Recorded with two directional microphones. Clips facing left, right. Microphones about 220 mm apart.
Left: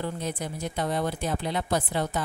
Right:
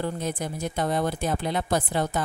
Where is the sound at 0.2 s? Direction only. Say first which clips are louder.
Right 2 dB; 45° right (ahead or behind).